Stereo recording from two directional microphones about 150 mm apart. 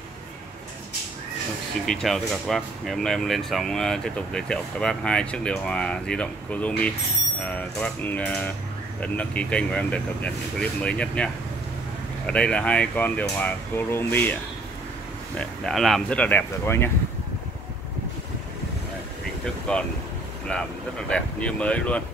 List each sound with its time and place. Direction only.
1.9 s speech: centre (ahead or behind)
12.3 s speech: 5° left (ahead or behind)
15.3 s speech: centre (ahead or behind)
19.7 s speech: 5° left (ahead or behind)
21.1 s speech: 10° left (ahead or behind)